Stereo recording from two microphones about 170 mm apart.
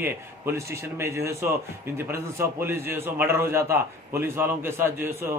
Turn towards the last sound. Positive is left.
turn(degrees=-15)  # may be behind; listen again after turning